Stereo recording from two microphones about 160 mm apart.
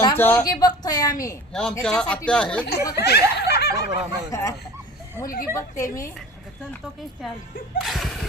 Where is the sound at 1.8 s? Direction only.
5° left (ahead or behind).